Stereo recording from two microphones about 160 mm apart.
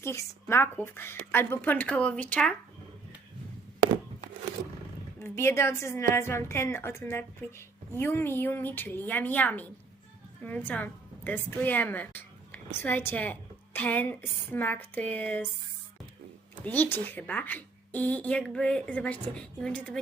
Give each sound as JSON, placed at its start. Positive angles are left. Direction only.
{"t": 0.0, "sound": "a woman's voice", "side_deg": 15}
{"t": 5.2, "sound": "a woman's voice", "side_deg": 15}
{"t": 16.6, "sound": "a woman's voice", "side_deg": 10}